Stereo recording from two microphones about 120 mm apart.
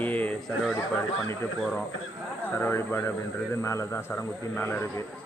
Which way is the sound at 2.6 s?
20° left (ahead or behind).